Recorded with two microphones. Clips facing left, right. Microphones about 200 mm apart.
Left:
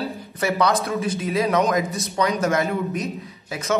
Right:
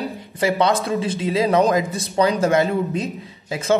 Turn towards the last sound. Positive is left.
turn(degrees=-30)  # may be behind; listen again after turning